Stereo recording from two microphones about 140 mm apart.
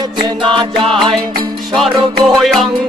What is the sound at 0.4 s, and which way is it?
Music, 35° right (ahead or behind).